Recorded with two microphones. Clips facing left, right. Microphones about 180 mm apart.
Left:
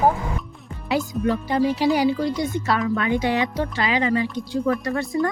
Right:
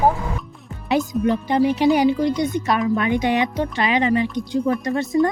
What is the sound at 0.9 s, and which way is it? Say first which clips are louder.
Speech: right 3 dB; 20° right (ahead or behind).